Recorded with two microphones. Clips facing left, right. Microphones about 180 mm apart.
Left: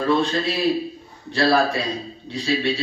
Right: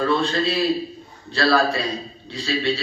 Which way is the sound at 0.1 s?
20° left (ahead or behind).